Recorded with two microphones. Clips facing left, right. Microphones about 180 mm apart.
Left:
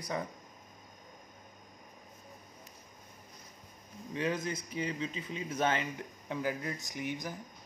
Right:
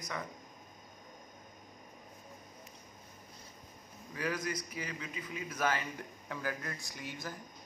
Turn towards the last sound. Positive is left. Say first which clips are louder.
# left 5 dB
turn(degrees=15)  # may be behind; listen again after turning